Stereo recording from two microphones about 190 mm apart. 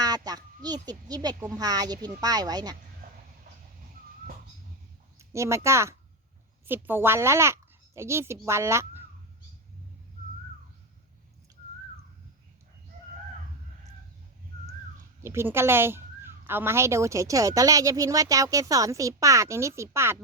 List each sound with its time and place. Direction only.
0.0 s a child's voice: 20° right (ahead or behind)
3.0 s a sound: 55° right (ahead or behind)
5.3 s a woman's voice: 15° right (ahead or behind)
15.2 s a woman's voice: 15° right (ahead or behind)